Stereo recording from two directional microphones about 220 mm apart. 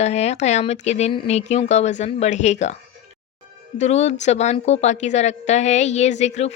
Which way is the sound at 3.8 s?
30° left (ahead or behind).